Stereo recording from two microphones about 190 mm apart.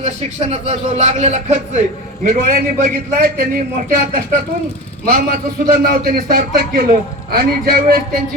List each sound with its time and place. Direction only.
0.0 s a man's voice: 35° right (ahead or behind); by 7.9 s 55° right (ahead or behind)